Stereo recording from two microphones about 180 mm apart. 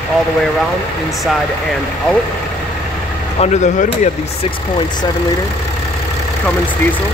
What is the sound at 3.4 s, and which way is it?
Speech, 40° left (ahead or behind).